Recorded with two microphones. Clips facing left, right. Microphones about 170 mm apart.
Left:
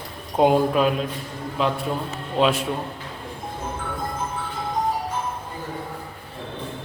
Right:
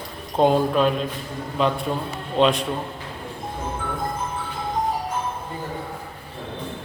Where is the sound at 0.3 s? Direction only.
5° left (ahead or behind).